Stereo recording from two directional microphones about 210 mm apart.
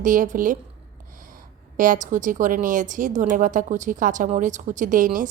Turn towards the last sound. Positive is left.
turn(degrees=-40)  # may be behind; listen again after turning